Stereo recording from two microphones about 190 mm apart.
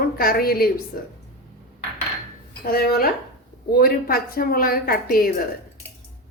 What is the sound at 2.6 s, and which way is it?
A woman's voice, 50° left (ahead or behind).